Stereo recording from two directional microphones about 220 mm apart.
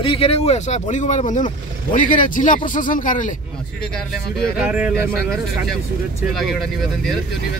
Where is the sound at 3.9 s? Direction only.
Centre (ahead or behind).